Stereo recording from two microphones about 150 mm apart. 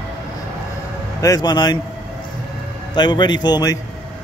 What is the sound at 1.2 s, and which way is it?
Speech, 25° left (ahead or behind).